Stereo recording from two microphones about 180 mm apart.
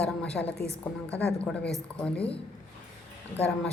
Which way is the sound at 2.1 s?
30° left (ahead or behind).